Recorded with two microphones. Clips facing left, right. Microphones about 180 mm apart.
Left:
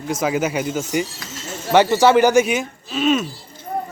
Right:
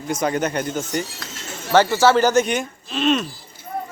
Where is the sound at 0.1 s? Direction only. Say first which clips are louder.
Left 1 dB; 5° left (ahead or behind).